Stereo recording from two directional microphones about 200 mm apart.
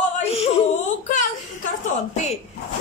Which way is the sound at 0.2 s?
30° left (ahead or behind).